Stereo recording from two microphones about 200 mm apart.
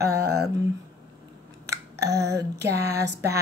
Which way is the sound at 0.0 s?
15° right (ahead or behind).